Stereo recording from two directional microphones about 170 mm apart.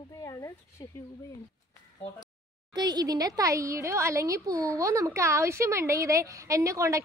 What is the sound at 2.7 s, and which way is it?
A woman's voice, 25° right (ahead or behind).